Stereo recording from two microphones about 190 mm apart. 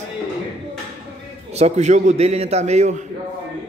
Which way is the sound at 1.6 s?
35° right (ahead or behind).